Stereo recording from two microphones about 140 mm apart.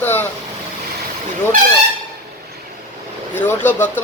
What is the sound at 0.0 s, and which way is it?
Vehicle, 15° left (ahead or behind).